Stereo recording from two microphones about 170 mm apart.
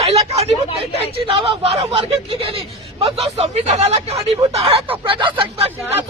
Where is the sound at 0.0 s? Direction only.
35° right (ahead or behind).